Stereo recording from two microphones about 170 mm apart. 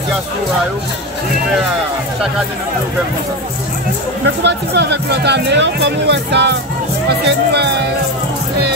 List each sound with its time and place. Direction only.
4.4 s speech: 85° right